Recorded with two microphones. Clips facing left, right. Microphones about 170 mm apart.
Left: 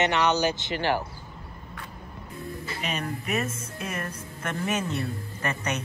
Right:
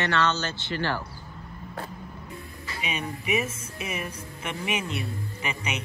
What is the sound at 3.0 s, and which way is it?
Speech, 10° right (ahead or behind).